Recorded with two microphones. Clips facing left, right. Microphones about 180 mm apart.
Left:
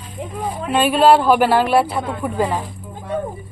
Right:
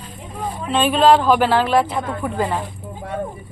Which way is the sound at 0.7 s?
10° left (ahead or behind).